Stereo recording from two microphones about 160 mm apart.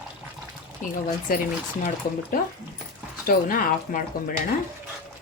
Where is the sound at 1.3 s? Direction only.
65° left (ahead or behind).